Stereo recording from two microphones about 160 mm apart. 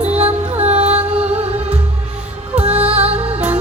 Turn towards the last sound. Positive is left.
turn(degrees=-40)  # may be behind; listen again after turning